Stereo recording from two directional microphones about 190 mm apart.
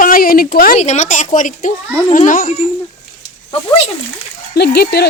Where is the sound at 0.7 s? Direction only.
35° left (ahead or behind).